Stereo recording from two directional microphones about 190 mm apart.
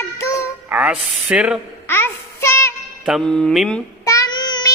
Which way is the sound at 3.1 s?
Centre (ahead or behind).